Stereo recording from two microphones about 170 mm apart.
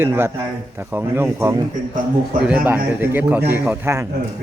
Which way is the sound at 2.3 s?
55° right (ahead or behind).